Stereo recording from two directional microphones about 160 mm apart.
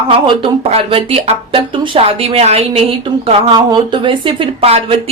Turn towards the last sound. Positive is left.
turn(degrees=-40)  # may be behind; listen again after turning